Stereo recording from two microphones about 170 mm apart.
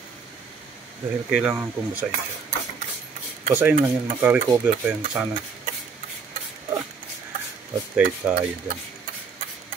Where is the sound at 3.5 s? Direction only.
10° right (ahead or behind).